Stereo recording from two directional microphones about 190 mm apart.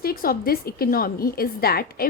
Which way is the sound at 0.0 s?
50° left (ahead or behind).